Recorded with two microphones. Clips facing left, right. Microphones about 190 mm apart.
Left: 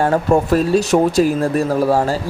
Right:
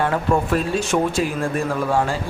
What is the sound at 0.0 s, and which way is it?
Speech, 45° left (ahead or behind).